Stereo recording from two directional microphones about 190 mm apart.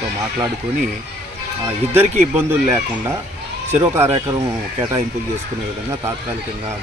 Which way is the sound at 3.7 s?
10° right (ahead or behind).